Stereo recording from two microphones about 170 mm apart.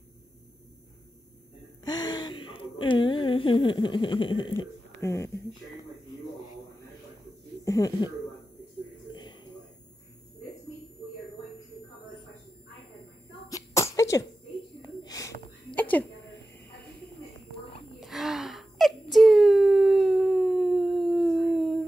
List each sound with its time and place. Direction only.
1.9 s gasp: 25° left (ahead or behind)
4.6 s speech: 15° left (ahead or behind)
7.6 s speech: 20° left (ahead or behind)
9.1 s a sound: 25° left (ahead or behind)
13.5 s sneeze: 20° left (ahead or behind)
15.0 s whispering: 20° left (ahead or behind)
15.7 s a sound: 10° left (ahead or behind)
18.0 s wail: centre (ahead or behind)